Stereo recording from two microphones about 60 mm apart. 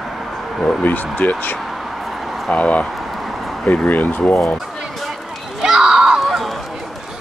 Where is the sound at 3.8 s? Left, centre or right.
Left.